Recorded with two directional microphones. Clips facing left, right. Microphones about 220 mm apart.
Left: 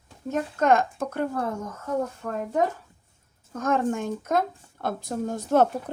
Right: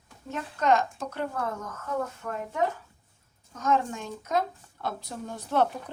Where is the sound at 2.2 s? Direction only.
35° left (ahead or behind).